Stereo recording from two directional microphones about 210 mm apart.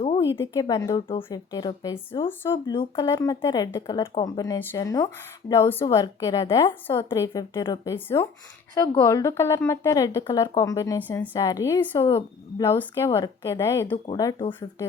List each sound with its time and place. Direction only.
0.2 s a woman's voice: 15° left (ahead or behind)